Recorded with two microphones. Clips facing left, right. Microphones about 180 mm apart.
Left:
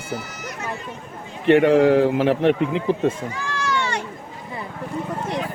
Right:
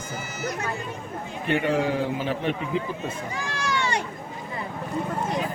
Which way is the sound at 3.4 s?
15° right (ahead or behind).